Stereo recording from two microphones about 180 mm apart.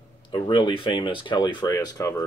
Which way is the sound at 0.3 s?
25° left (ahead or behind).